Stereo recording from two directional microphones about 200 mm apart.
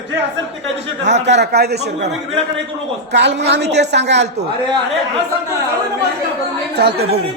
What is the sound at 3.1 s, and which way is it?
Speech, 60° right (ahead or behind).